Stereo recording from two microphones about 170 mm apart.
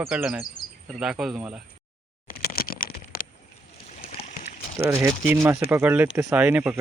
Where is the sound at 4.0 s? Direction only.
35° left (ahead or behind).